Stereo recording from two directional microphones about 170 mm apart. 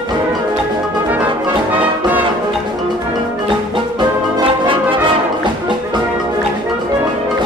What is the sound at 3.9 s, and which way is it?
Music, 30° right (ahead or behind).